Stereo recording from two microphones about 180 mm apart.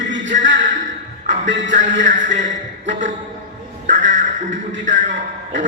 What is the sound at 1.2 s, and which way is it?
Music, 45° right (ahead or behind).